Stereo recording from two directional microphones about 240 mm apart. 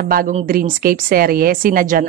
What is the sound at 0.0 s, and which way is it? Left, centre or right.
A woman's voice, right.